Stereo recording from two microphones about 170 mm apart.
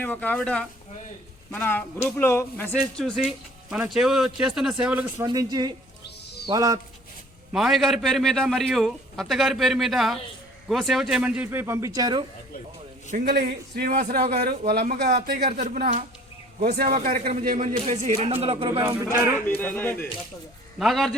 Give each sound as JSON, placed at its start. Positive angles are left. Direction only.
{"t": 0.0, "sound": "speech", "side_deg": 10}
{"t": 2.9, "sound": "a man's voice", "side_deg": 0}
{"t": 5.2, "sound": "speech", "side_deg": -20}
{"t": 7.5, "sound": "a man's voice", "side_deg": 0}
{"t": 13.2, "sound": "a man's voice", "side_deg": -70}
{"t": 15.6, "sound": "a man's voice", "side_deg": -55}
{"t": 18.8, "sound": "a man's voice", "side_deg": -15}
{"t": 19.5, "sound": "speech", "side_deg": 10}
{"t": 20.7, "sound": "a man's voice", "side_deg": 0}